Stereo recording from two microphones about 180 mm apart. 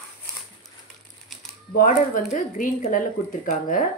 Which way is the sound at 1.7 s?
45° left (ahead or behind).